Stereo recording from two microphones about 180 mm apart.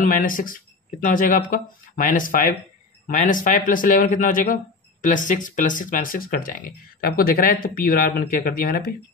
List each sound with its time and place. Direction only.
0.0 s speech: 50° left (ahead or behind)